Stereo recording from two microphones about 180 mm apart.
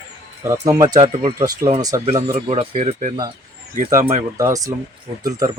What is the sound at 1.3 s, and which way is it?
Speech, 20° right (ahead or behind).